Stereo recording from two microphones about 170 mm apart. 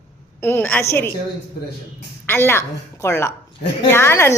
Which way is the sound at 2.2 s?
15° left (ahead or behind).